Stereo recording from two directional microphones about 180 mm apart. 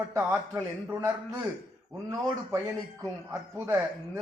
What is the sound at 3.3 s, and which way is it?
Speech, 15° right (ahead or behind).